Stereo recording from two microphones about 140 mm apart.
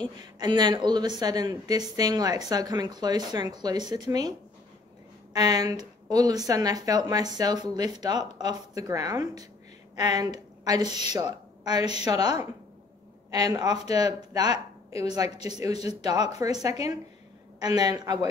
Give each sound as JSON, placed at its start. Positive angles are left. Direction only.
{"t": 0.4, "sound": "a woman's voice", "side_deg": -30}
{"t": 15.2, "sound": "speech", "side_deg": 45}
{"t": 15.6, "sound": "a woman's voice", "side_deg": -25}
{"t": 17.6, "sound": "a woman's voice", "side_deg": -30}